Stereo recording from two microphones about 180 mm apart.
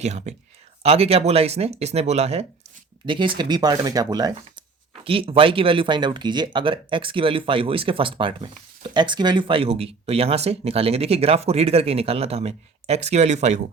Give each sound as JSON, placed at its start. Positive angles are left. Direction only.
{"t": 0.0, "sound": "speech", "side_deg": -40}